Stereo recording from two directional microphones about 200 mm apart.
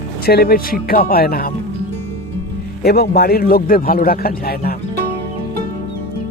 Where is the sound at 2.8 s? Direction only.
50° left (ahead or behind).